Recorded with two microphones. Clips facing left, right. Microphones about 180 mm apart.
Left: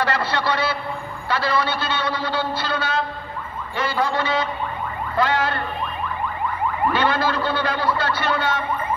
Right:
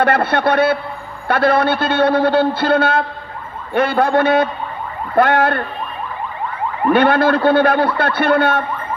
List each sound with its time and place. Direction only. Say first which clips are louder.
0.0 s a man's voice: right 7 dB; 55° right (ahead or behind)
6.9 s a man's voice: right 11 dB; 60° right (ahead or behind)